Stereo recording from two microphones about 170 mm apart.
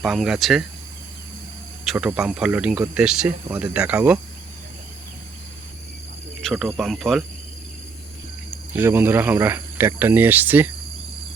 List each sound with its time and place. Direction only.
0.0 s speech: centre (ahead or behind)
1.8 s speech: 5° right (ahead or behind)
6.4 s cricket: centre (ahead or behind)
6.7 s speech: centre (ahead or behind)
8.7 s speech: 15° right (ahead or behind)